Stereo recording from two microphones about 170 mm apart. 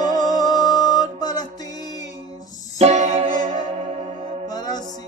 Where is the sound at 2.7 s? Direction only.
40° right (ahead or behind).